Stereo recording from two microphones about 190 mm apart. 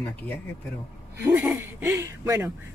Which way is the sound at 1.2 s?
5° right (ahead or behind).